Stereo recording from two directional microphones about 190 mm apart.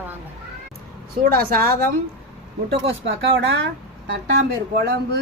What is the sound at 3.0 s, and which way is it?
Speech, 75° right (ahead or behind).